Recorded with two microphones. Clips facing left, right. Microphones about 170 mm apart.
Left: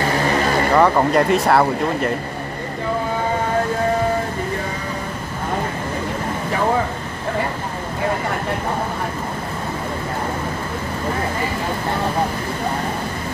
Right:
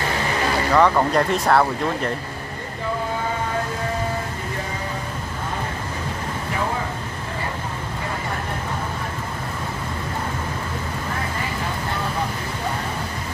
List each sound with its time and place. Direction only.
0.7 s speech: 10° left (ahead or behind)